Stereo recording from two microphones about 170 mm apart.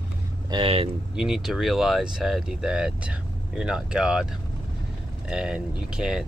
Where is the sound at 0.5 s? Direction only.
35° right (ahead or behind).